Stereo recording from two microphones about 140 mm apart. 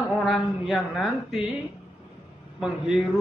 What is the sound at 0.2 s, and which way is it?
A man's voice, centre (ahead or behind).